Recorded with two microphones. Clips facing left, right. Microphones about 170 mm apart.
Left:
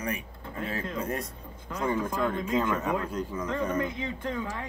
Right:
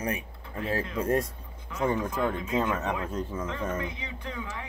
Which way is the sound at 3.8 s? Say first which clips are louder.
Left 5 dB; 50° left (ahead or behind).